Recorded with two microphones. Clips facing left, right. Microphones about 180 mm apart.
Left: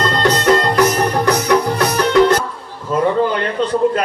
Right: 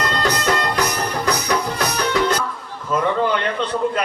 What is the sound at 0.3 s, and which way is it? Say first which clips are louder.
Music: left 8 dB; 45° left (ahead or behind).